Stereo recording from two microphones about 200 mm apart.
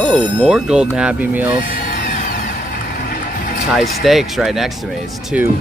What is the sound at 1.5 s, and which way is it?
Vehicle, 45° left (ahead or behind).